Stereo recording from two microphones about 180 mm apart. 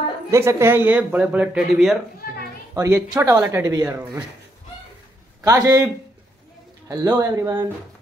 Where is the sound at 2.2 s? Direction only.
60° left (ahead or behind).